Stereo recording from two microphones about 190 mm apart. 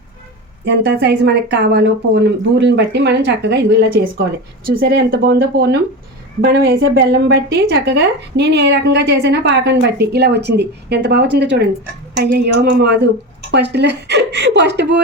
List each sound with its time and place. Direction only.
0.6 s a woman's voice: 60° right (ahead or behind)